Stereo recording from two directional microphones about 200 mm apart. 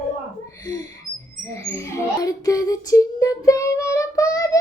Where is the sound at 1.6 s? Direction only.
15° left (ahead or behind).